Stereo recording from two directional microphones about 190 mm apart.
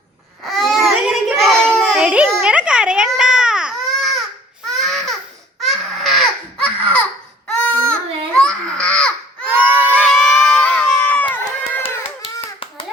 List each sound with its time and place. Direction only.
0.4 s child singing: centre (ahead or behind)
4.6 s babbling: centre (ahead or behind)
5.5 s baby cry: centre (ahead or behind)
9.5 s a sound: 10° right (ahead or behind)
10.0 s a sound: centre (ahead or behind)
11.8 s hands: 30° left (ahead or behind)